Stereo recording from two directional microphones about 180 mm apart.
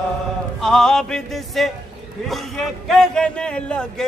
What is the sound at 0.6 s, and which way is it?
Music, 5° left (ahead or behind).